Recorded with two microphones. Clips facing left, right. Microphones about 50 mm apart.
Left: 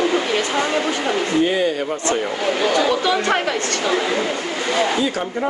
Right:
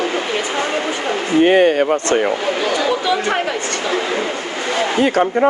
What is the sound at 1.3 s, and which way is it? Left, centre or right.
Speech, right.